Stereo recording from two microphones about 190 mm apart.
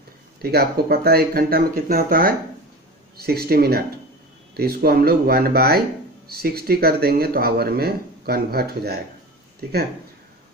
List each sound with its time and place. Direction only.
0.4 s speech: 55° right (ahead or behind)